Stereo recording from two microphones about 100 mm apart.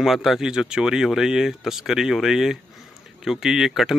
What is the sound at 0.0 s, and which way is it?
Speech, centre (ahead or behind).